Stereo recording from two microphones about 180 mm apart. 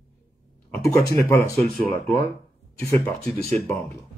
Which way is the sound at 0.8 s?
15° left (ahead or behind).